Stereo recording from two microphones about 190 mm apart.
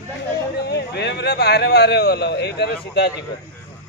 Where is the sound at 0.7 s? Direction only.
60° left (ahead or behind).